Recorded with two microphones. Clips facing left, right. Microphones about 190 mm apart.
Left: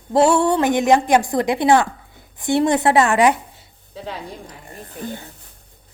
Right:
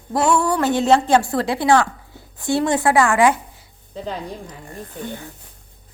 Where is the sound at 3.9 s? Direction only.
5° left (ahead or behind).